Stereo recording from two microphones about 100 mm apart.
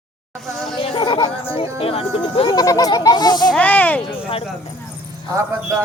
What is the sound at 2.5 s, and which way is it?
Speech, 40° left (ahead or behind).